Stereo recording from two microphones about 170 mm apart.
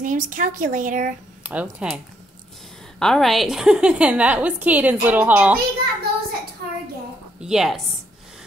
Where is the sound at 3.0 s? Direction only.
Centre (ahead or behind).